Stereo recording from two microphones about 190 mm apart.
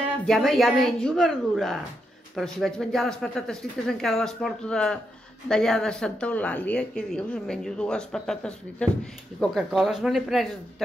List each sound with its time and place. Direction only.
0.3 s a woman's voice: centre (ahead or behind)